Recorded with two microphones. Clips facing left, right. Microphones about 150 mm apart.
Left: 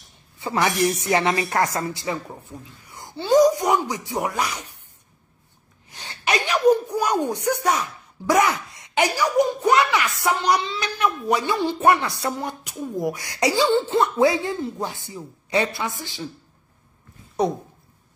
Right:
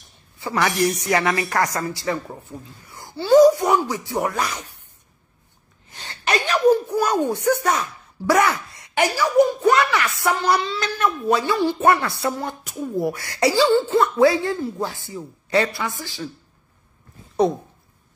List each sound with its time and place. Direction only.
0.4 s speech: 20° left (ahead or behind)
5.9 s gasp: 15° left (ahead or behind)
7.2 s speech: 15° left (ahead or behind)